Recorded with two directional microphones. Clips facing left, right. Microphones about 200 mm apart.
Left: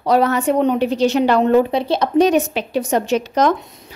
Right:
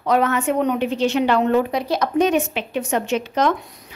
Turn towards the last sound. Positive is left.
turn(degrees=40)  # may be behind; listen again after turning